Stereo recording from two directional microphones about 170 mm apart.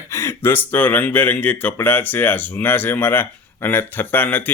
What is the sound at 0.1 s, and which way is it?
Speech, 15° left (ahead or behind).